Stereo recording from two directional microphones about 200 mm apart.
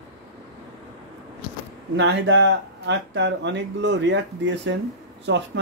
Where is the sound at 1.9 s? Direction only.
65° right (ahead or behind).